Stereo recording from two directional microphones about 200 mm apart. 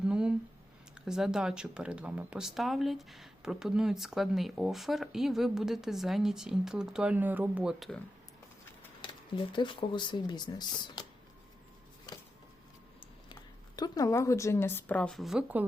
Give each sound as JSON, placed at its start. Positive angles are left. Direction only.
{"t": 0.1, "sound": "a sound", "side_deg": -5}
{"t": 0.9, "sound": "speech", "side_deg": -5}
{"t": 9.0, "sound": "speech", "side_deg": 25}
{"t": 13.7, "sound": "speech", "side_deg": 20}